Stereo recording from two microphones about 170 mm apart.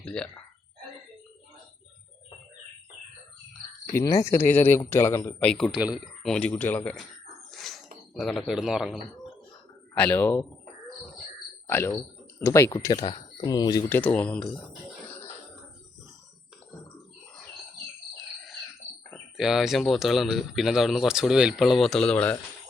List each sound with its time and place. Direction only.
0.0 s speech: 5° left (ahead or behind)
3.8 s speech: 20° left (ahead or behind)
5.7 s speech: 5° right (ahead or behind)
7.5 s a sound: centre (ahead or behind)
9.9 s speech: 10° left (ahead or behind)
11.7 s speech: 15° left (ahead or behind)
14.0 s speech: 10° left (ahead or behind)
19.1 s speech: centre (ahead or behind)